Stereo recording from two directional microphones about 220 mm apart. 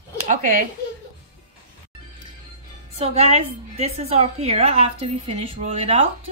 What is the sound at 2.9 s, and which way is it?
A woman's voice, 30° right (ahead or behind).